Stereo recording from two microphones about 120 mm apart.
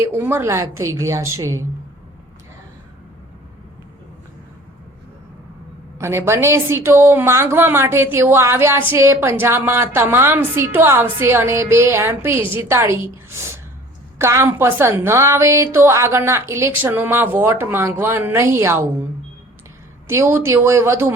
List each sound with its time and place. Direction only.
0.0 s a woman's voice: 20° right (ahead or behind)
6.0 s a woman's voice: 20° right (ahead or behind)
14.2 s a woman's voice: 20° right (ahead or behind)
20.1 s a woman's voice: 20° right (ahead or behind)